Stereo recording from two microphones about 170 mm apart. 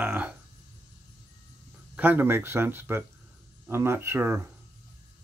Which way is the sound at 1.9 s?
10° right (ahead or behind).